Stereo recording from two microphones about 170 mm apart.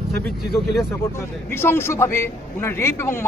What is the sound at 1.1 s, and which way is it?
A man's voice, 15° left (ahead or behind).